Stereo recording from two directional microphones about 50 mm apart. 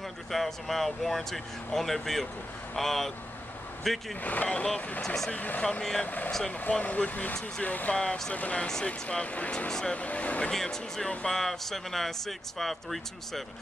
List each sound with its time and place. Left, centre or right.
0.3 s speech: centre
4.2 s speech: left
5.0 s speech: centre
5.3 s speech: left
5.6 s speech: centre
6.0 s speech: left
7.9 s speech: left
9.7 s speech: centre
9.9 s speech: left
10.5 s speech: centre